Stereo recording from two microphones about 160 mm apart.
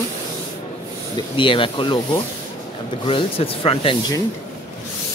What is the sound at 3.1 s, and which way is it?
Speech, 35° left (ahead or behind).